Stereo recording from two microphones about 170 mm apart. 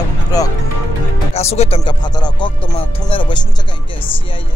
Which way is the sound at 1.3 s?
40° left (ahead or behind).